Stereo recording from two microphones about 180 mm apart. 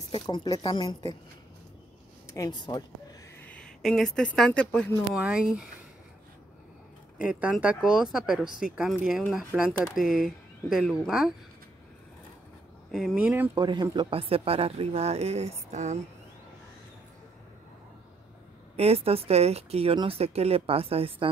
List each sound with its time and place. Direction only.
0.1 s speech: 25° left (ahead or behind)
2.2 s speech: 20° left (ahead or behind)
3.4 s speech: 5° left (ahead or behind)
7.2 s speech: 5° right (ahead or behind)
12.9 s speech: centre (ahead or behind)
13.6 s speech: 25° right (ahead or behind); by 16.0 s 40° right (ahead or behind)
18.8 s speech: 35° right (ahead or behind)